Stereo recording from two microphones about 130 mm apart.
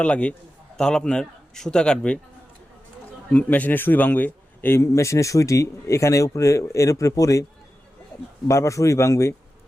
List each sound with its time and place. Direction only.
0.0 s a man's voice: 10° left (ahead or behind)
3.2 s a man's voice: 10° left (ahead or behind)
8.4 s a man's voice: 25° left (ahead or behind)